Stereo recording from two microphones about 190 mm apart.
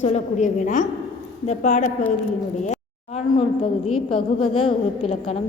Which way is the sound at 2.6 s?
35° left (ahead or behind).